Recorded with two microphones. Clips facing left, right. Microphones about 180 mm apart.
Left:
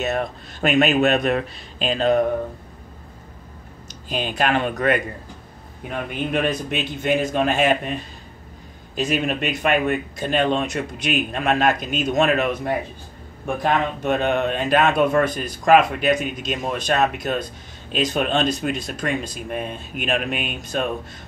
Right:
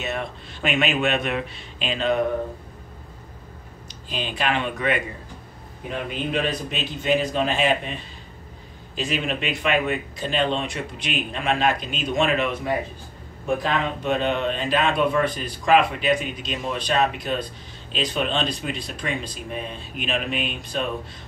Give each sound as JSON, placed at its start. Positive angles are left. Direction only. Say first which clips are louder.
{"t": 0.0, "sound": "a man's voice", "louder": "left 5 dB", "side_deg": 40}
{"t": 4.1, "sound": "a man's voice", "louder": "left 4 dB", "side_deg": 45}
{"t": 5.9, "sound": "a man's voice", "louder": "left 2 dB", "side_deg": 55}